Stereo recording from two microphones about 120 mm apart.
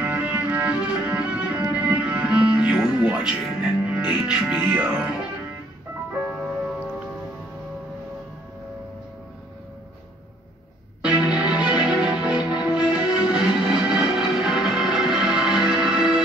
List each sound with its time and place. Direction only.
0.0 s music: 15° right (ahead or behind)
11.0 s music: 10° right (ahead or behind)